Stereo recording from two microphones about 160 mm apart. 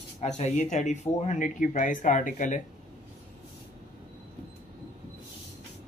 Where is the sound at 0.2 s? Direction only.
45° left (ahead or behind).